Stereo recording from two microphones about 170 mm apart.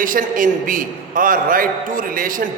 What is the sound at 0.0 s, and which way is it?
A man's voice, 50° right (ahead or behind).